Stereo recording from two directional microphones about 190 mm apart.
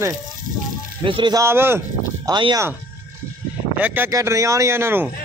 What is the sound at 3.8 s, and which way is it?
A man's voice, 10° right (ahead or behind).